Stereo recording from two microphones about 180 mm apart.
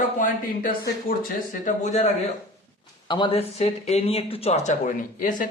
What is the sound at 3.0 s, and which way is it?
Speech, 25° left (ahead or behind).